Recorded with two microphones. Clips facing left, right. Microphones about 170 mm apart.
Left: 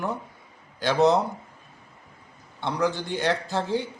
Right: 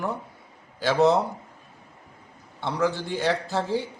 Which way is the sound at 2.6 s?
5° right (ahead or behind).